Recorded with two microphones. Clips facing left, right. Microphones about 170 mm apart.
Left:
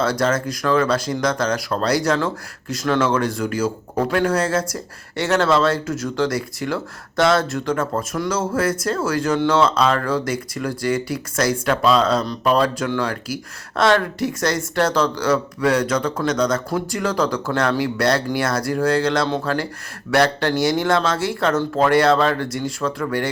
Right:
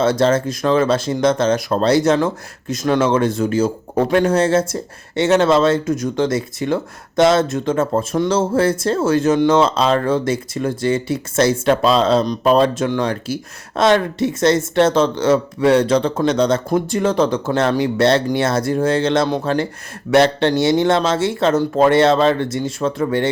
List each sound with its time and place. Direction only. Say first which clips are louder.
0.0 s speech: right 5 dB; 25° right (ahead or behind)